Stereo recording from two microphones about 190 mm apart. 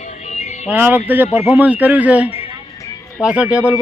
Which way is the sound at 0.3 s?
35° left (ahead or behind).